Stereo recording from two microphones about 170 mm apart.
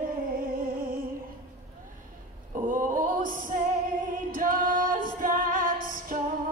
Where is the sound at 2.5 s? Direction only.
55° right (ahead or behind).